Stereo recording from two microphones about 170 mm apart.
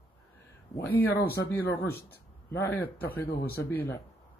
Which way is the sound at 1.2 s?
70° left (ahead or behind).